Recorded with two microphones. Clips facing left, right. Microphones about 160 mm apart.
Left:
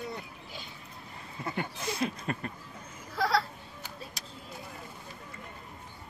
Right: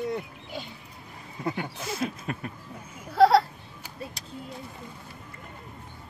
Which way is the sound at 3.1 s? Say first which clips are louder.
Right 11 dB; 65° right (ahead or behind).